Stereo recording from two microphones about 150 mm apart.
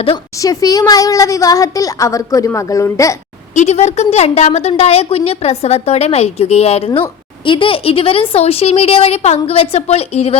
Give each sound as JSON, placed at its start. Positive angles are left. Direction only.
{"t": 0.3, "sound": "a woman's voice", "side_deg": 25}
{"t": 3.5, "sound": "a woman's voice", "side_deg": 50}